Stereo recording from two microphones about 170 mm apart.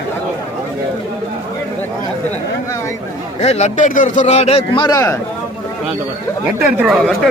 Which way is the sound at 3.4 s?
40° left (ahead or behind).